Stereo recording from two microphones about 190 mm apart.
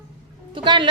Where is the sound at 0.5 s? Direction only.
25° right (ahead or behind).